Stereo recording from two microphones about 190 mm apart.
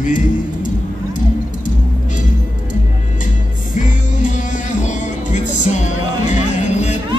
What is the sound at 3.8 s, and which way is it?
Music, 40° left (ahead or behind).